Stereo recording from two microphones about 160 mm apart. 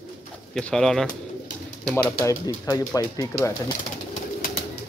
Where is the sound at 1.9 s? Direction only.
20° left (ahead or behind).